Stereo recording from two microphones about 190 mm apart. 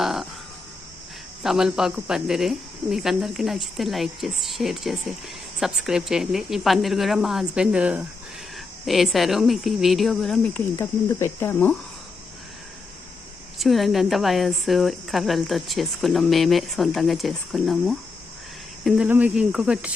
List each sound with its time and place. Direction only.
0.0 s a sound: centre (ahead or behind)
1.4 s speech: centre (ahead or behind)
13.6 s speech: centre (ahead or behind)